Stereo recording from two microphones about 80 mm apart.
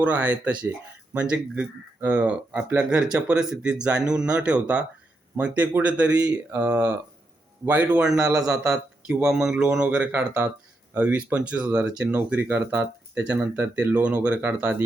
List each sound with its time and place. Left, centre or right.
0.0 s speech: centre